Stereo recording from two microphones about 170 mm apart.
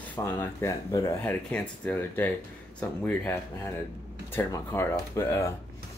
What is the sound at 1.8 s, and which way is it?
Speech, 10° left (ahead or behind).